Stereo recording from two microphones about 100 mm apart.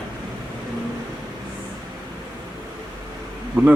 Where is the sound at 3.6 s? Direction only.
20° right (ahead or behind).